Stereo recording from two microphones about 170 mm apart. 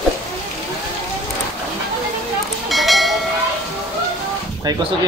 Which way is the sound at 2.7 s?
Centre (ahead or behind).